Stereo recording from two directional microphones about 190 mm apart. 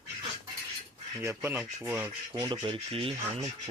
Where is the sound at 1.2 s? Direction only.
10° right (ahead or behind).